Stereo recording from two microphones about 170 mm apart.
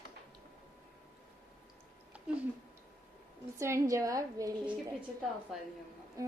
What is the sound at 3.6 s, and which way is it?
A woman's voice, 15° right (ahead or behind).